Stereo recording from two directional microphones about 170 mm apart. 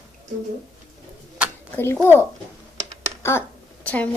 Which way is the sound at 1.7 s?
15° left (ahead or behind).